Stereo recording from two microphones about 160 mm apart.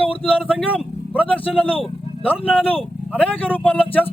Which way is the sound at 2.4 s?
10° left (ahead or behind).